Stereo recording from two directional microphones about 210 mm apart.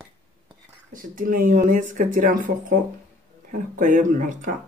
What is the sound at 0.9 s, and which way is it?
Speech, 40° right (ahead or behind).